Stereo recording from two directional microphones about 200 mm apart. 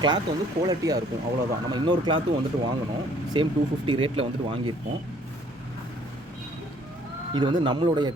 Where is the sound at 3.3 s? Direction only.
25° right (ahead or behind).